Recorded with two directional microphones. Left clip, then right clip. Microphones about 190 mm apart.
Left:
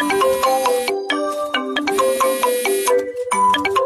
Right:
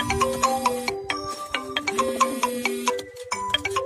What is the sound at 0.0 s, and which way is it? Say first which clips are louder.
Music: left 7 dB; 50° left (ahead or behind).